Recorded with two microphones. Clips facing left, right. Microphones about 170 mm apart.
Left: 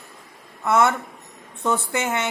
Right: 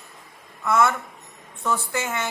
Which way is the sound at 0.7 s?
25° left (ahead or behind).